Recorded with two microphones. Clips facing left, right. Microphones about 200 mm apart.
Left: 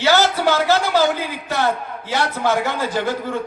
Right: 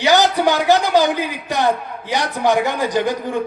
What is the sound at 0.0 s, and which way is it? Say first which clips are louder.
A man's voice: right 2 dB; 15° right (ahead or behind).